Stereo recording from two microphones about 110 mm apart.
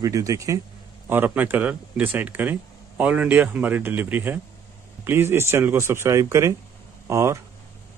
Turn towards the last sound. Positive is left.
turn(degrees=-25)  # may be behind; listen again after turning